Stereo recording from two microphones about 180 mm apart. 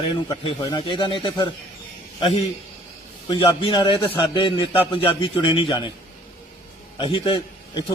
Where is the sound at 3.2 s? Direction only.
25° left (ahead or behind).